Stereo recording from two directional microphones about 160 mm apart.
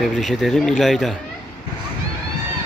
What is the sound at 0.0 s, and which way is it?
Speech, centre (ahead or behind).